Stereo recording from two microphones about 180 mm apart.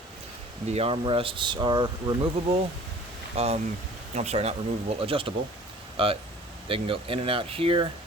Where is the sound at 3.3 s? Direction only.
35° right (ahead or behind).